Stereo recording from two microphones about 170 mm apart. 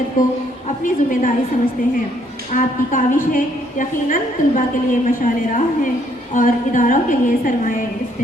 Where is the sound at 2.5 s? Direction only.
50° left (ahead or behind).